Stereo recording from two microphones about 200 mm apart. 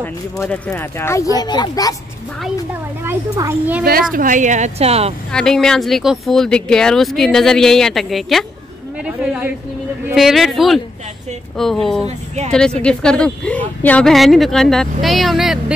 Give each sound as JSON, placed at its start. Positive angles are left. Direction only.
{"t": 0.0, "sound": "speech", "side_deg": 5}
{"t": 2.4, "sound": "speech", "side_deg": -10}
{"t": 4.1, "sound": "a woman's voice", "side_deg": -40}
{"t": 5.3, "sound": "speech", "side_deg": 5}